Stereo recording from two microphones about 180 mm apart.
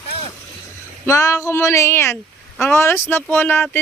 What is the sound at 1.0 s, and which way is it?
Speech, 20° left (ahead or behind).